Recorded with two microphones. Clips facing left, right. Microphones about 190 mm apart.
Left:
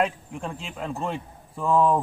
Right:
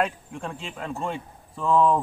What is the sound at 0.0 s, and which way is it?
Speech, 5° left (ahead or behind).